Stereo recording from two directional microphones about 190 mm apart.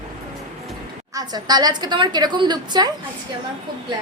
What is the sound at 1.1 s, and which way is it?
A woman's voice, 20° right (ahead or behind).